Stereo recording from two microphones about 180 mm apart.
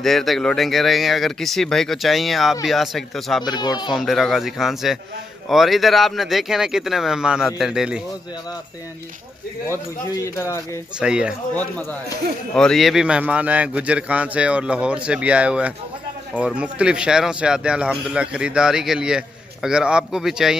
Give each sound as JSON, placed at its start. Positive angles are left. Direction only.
{"t": 0.0, "sound": "speech", "side_deg": 0}
{"t": 3.4, "sound": "speech", "side_deg": 25}
{"t": 3.9, "sound": "speech", "side_deg": 0}
{"t": 9.7, "sound": "speech", "side_deg": 15}
{"t": 11.0, "sound": "speech", "side_deg": -5}
{"t": 12.5, "sound": "a man's voice", "side_deg": 0}